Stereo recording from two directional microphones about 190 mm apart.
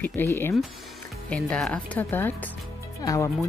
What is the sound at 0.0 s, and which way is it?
A woman's voice, 15° left (ahead or behind).